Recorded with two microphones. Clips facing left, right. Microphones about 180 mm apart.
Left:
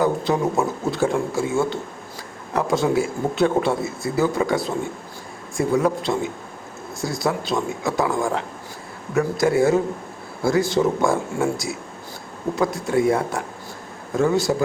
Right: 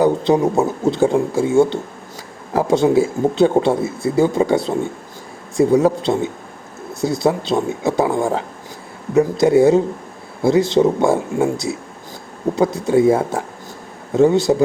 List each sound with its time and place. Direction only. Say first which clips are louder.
0.0 s speech: right 6 dB; 25° right (ahead or behind)